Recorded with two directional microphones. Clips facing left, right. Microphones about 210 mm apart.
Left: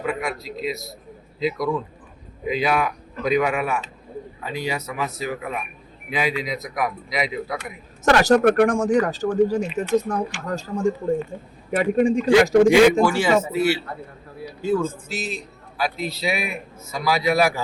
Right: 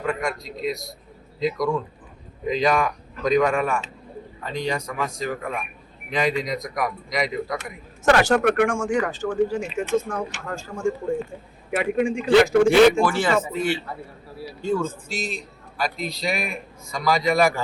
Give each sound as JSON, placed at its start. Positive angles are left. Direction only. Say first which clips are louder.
{"t": 0.0, "sound": "a man's voice", "louder": "even", "side_deg": 5}
{"t": 8.2, "sound": "speech", "louder": "left 3 dB", "side_deg": 40}
{"t": 12.6, "sound": "a man's voice", "louder": "left 1 dB", "side_deg": 10}